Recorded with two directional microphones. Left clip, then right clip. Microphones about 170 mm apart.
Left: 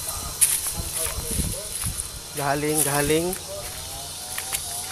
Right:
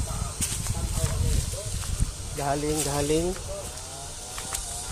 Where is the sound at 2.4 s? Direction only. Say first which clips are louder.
Left 3 dB; 30° left (ahead or behind).